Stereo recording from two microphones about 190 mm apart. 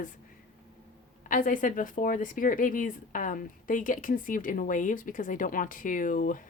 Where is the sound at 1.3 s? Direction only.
45° left (ahead or behind).